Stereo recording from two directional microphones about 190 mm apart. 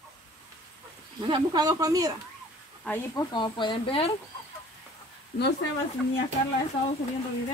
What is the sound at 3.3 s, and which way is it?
Speech, 25° left (ahead or behind).